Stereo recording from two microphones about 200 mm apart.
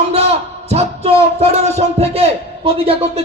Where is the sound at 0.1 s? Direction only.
30° right (ahead or behind).